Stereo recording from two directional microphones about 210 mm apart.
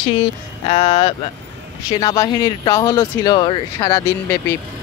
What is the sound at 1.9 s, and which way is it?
Speech, 20° left (ahead or behind).